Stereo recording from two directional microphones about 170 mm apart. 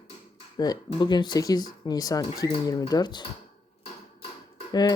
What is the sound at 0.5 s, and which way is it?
Speech, 25° left (ahead or behind).